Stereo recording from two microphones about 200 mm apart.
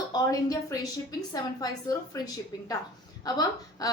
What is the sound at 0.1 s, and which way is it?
Speech, 20° left (ahead or behind).